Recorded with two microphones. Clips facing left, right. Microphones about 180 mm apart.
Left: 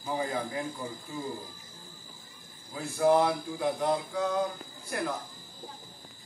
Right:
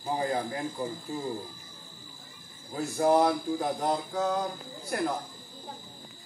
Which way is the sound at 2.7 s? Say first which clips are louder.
Even; 40° right (ahead or behind).